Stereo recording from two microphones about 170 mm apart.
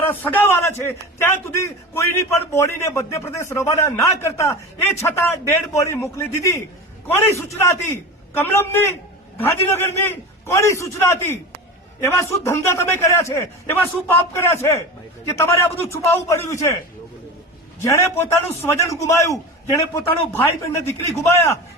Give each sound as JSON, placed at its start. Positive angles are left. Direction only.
{"t": 0.0, "sound": "a man's voice", "side_deg": 10}
{"t": 17.8, "sound": "a man's voice", "side_deg": 15}